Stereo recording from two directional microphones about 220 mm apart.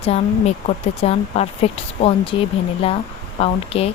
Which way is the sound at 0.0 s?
25° left (ahead or behind).